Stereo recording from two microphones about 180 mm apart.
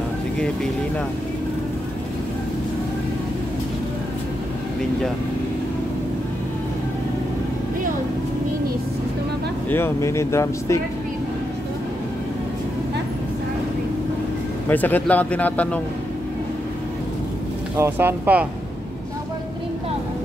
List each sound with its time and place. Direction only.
9.7 s speech: 10° left (ahead or behind)
14.7 s speech: 10° left (ahead or behind)
17.7 s speech: 10° right (ahead or behind)